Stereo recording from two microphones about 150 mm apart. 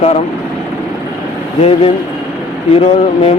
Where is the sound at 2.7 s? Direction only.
40° left (ahead or behind).